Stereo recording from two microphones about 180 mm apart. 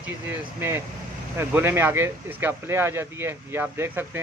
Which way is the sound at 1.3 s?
15° right (ahead or behind).